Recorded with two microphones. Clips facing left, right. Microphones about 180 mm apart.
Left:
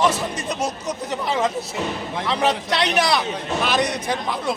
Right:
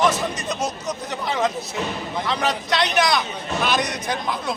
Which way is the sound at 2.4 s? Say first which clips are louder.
Left 3 dB; 30° left (ahead or behind).